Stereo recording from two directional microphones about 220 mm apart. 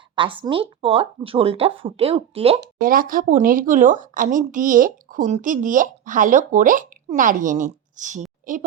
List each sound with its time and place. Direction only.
0.2 s speech: 20° right (ahead or behind)
2.8 s a woman's voice: 40° right (ahead or behind)